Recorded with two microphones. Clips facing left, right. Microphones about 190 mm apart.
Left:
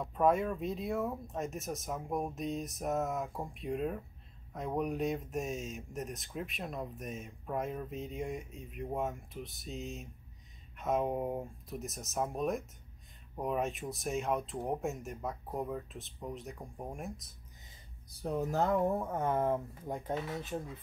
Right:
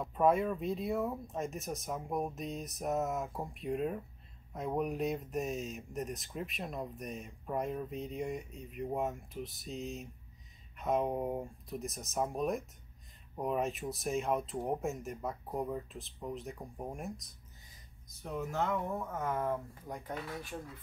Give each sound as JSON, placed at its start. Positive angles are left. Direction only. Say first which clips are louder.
{"t": 0.0, "sound": "speech", "louder": "even", "side_deg": 0}
{"t": 18.0, "sound": "speech", "louder": "left 4 dB", "side_deg": 35}